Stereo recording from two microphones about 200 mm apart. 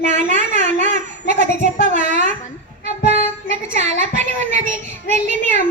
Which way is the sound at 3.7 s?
35° right (ahead or behind).